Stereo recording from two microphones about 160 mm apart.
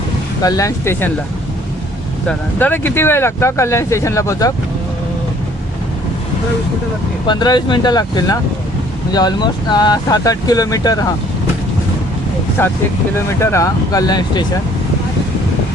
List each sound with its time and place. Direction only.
0.4 s speech: 20° left (ahead or behind)
2.2 s speech: 10° left (ahead or behind)
7.3 s speech: 25° left (ahead or behind)
13.1 s speech: 15° left (ahead or behind)